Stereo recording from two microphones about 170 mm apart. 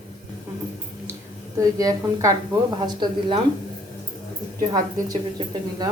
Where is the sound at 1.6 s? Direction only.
20° right (ahead or behind).